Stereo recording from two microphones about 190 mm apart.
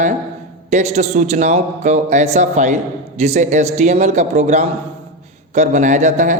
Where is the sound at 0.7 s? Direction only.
35° right (ahead or behind).